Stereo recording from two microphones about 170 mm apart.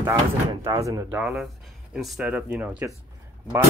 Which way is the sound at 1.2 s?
5° right (ahead or behind).